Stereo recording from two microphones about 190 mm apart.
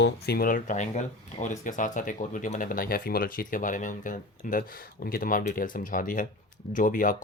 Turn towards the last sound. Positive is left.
turn(degrees=45)  # may be behind; listen again after turning